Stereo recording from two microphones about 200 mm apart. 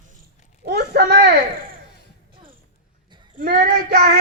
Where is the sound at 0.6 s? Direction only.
50° right (ahead or behind).